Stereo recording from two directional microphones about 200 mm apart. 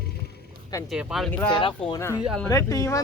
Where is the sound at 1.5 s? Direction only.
25° left (ahead or behind).